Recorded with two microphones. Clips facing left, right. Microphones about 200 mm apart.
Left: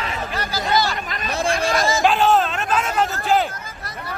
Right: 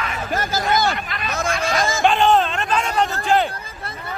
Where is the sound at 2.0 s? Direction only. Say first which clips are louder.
Right 2 dB; 5° left (ahead or behind).